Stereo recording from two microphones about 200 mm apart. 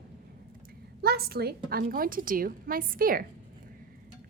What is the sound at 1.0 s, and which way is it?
A woman's voice, 50° right (ahead or behind).